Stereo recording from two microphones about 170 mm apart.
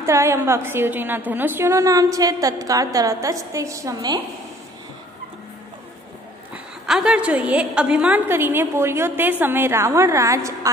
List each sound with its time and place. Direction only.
0.0 s a woman's voice: 15° right (ahead or behind)
6.5 s a woman's voice: 5° right (ahead or behind)